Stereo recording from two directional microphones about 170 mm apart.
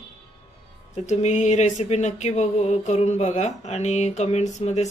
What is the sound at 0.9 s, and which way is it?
Speech, 45° left (ahead or behind).